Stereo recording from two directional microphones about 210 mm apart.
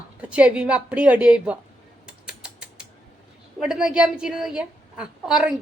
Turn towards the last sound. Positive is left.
turn(degrees=-5)  # may be behind; listen again after turning